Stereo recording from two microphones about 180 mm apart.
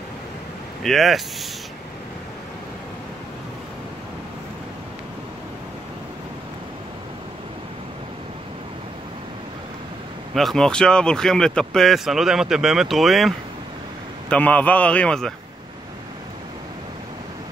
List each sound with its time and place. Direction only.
0.8 s speech: centre (ahead or behind)
10.3 s speech: centre (ahead or behind)
14.3 s a man's voice: 10° left (ahead or behind)